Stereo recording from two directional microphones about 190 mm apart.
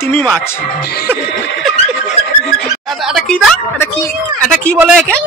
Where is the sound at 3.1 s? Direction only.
Centre (ahead or behind).